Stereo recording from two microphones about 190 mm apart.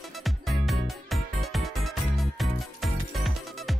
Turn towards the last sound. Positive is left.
turn(degrees=0)  # may be behind; listen again after turning